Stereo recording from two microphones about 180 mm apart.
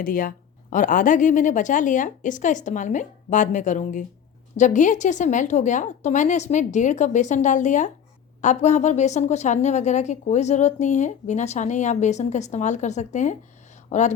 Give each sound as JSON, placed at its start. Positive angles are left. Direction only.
{"t": 0.0, "sound": "a woman's voice", "side_deg": 50}